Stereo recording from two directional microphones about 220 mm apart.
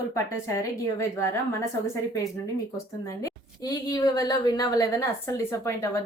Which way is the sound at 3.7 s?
15° left (ahead or behind).